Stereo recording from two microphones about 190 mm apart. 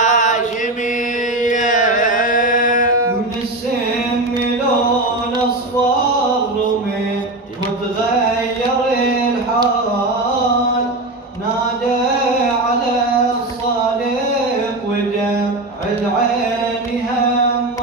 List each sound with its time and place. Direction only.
0.0 s chant: 40° left (ahead or behind)
1.4 s chant: 40° left (ahead or behind)